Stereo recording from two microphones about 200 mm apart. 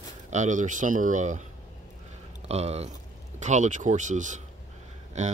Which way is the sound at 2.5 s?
30° right (ahead or behind).